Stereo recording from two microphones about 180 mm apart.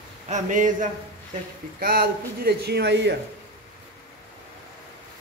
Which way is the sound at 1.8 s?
55° right (ahead or behind).